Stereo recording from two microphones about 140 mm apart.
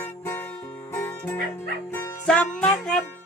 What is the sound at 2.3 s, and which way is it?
Music, 5° left (ahead or behind).